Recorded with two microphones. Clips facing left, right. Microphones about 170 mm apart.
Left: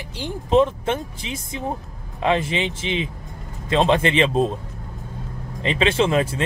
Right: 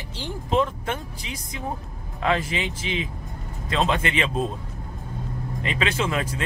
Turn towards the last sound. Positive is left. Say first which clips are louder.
# left 7 dB
turn(degrees=25)  # may be behind; listen again after turning